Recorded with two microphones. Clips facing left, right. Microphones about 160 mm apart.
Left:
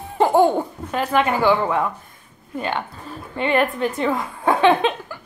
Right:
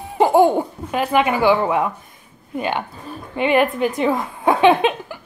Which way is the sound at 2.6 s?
15° right (ahead or behind).